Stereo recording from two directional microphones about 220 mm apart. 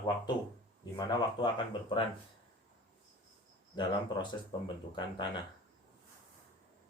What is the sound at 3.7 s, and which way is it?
Speech, 20° left (ahead or behind).